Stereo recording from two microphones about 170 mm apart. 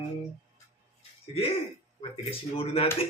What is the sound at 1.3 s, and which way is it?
Speech, 35° left (ahead or behind).